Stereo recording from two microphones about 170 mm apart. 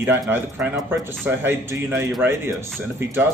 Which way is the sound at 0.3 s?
10° right (ahead or behind).